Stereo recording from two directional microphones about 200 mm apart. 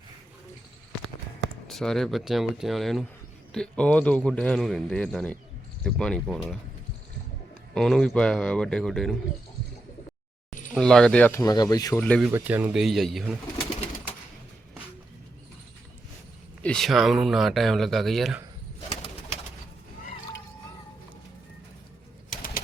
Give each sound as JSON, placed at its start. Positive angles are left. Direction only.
{"t": 1.6, "sound": "a man's voice", "side_deg": 0}
{"t": 7.7, "sound": "a man's voice", "side_deg": 0}
{"t": 10.8, "sound": "speech", "side_deg": 5}
{"t": 12.2, "sound": "a man's voice", "side_deg": -10}
{"t": 16.6, "sound": "a man's voice", "side_deg": 0}
{"t": 22.3, "sound": "bird", "side_deg": 45}